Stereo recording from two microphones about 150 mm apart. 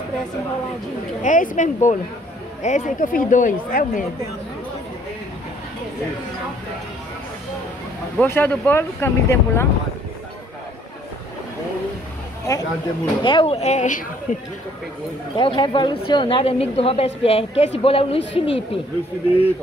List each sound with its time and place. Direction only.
1.2 s speech: 60° left (ahead or behind)
8.2 s speech: 10° left (ahead or behind)
12.4 s a woman's voice: 25° left (ahead or behind); by 14.0 s 55° left (ahead or behind)
15.3 s a woman's voice: 35° left (ahead or behind)